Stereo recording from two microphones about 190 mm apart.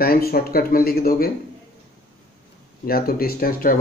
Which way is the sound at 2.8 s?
50° left (ahead or behind).